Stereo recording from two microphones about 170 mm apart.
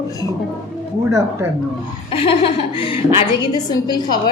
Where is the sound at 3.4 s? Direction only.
25° left (ahead or behind).